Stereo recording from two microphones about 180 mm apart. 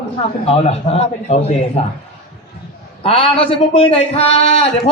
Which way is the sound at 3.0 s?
30° left (ahead or behind).